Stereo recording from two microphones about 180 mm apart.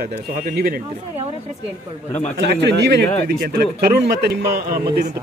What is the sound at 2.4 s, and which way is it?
Speech, 70° right (ahead or behind).